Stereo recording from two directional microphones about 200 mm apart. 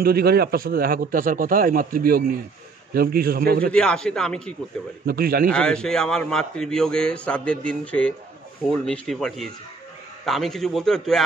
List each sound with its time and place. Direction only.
0.0 s a man's voice: 50° right (ahead or behind)
3.7 s a man's voice: 5° left (ahead or behind)
5.0 s a man's voice: 50° right (ahead or behind)
5.5 s a man's voice: 5° left (ahead or behind)